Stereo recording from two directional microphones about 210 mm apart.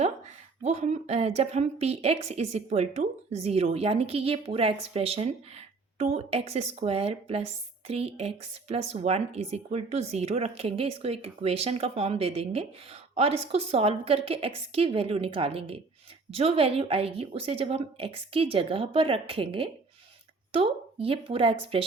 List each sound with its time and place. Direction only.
0.6 s speech: 30° right (ahead or behind)